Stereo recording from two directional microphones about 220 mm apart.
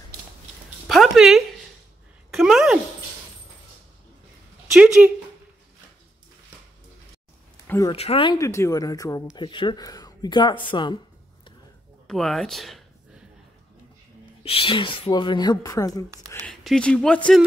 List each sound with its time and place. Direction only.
0.8 s a sound: centre (ahead or behind)
4.7 s speech: 5° right (ahead or behind)
7.6 s speech: 10° left (ahead or behind)
7.9 s speech: 25° left (ahead or behind)
12.1 s a sound: centre (ahead or behind)
14.4 s speech: 25° left (ahead or behind)
16.3 s speech: 5° left (ahead or behind)